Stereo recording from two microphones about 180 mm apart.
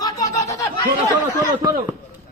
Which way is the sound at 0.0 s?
20° left (ahead or behind).